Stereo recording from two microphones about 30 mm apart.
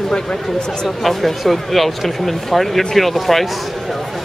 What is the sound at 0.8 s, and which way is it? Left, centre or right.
Speech, centre.